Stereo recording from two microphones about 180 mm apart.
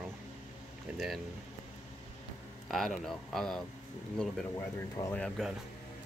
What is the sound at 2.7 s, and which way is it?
Speech, centre (ahead or behind).